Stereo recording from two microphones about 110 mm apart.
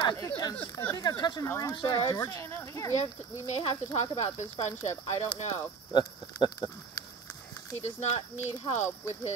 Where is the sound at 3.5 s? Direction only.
75° left (ahead or behind).